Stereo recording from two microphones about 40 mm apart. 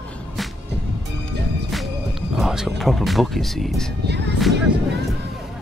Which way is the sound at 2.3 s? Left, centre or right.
Centre.